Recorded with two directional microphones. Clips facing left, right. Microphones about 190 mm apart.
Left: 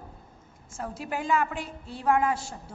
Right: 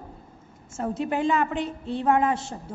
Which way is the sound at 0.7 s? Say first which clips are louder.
Right 8 dB; 20° right (ahead or behind).